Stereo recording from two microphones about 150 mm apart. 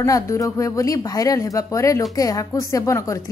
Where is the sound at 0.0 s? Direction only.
20° left (ahead or behind).